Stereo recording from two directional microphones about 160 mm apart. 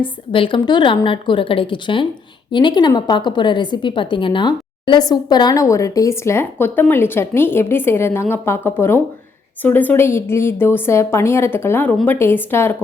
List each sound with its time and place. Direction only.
0.0 s a woman's voice: 30° left (ahead or behind); by 12.7 s 15° left (ahead or behind)